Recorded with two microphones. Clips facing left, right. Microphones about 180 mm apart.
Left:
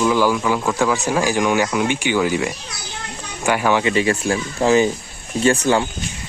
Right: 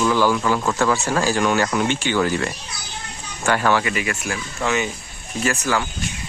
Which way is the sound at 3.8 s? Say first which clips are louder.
Left 7 dB; 30° left (ahead or behind).